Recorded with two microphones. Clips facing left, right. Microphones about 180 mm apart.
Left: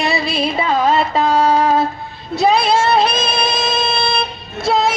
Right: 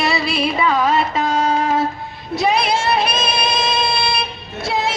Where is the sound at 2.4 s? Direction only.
25° left (ahead or behind).